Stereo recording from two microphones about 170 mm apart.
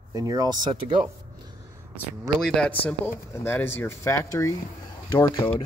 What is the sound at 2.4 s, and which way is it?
Speech, 5° left (ahead or behind).